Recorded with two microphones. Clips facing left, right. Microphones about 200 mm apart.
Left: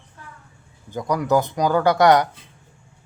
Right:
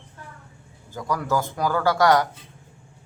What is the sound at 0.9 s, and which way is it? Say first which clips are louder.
Speech: left 5 dB; 20° left (ahead or behind).